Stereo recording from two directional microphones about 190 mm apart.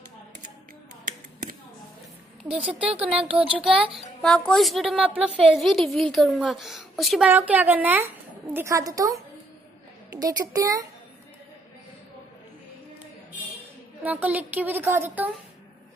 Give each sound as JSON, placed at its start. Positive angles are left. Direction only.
{"t": 2.4, "sound": "a woman's voice", "side_deg": -30}
{"t": 2.7, "sound": "a woman's voice", "side_deg": -10}
{"t": 10.1, "sound": "a woman's voice", "side_deg": -20}
{"t": 14.0, "sound": "a woman's voice", "side_deg": -10}